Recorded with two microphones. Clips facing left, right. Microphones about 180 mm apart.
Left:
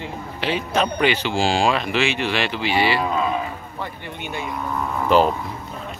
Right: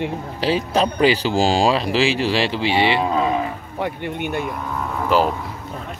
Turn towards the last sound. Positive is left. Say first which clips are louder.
# left 1 dB
turn(degrees=-5)  # may be behind; listen again after turning